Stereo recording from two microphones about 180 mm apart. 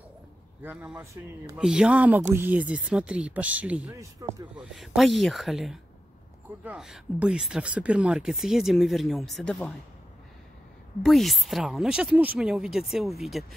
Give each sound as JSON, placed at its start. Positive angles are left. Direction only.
{"t": 0.6, "sound": "speech", "side_deg": -10}
{"t": 4.0, "sound": "speech", "side_deg": -20}
{"t": 4.6, "sound": "speech", "side_deg": 0}
{"t": 11.1, "sound": "speech", "side_deg": 0}